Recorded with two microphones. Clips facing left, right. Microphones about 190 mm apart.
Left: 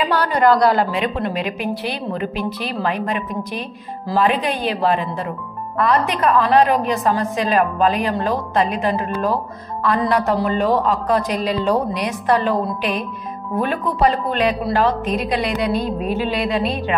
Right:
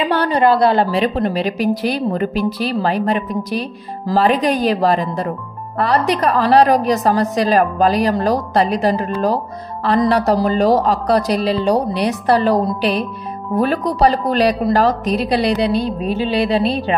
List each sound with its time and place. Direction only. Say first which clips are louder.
0.0 s a woman's voice: right 2 dB; 30° right (ahead or behind)